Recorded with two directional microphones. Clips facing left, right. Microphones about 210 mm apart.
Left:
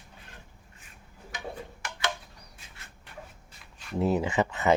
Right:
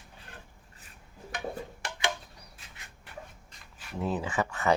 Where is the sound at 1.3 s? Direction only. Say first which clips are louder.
Right 3 dB; 60° right (ahead or behind).